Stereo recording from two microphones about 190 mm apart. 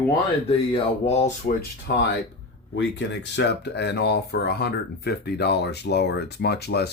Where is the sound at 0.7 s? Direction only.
35° left (ahead or behind).